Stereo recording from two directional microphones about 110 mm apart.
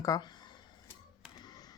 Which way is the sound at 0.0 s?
35° left (ahead or behind).